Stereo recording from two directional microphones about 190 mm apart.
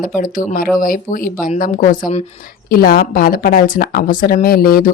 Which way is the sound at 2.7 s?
50° left (ahead or behind).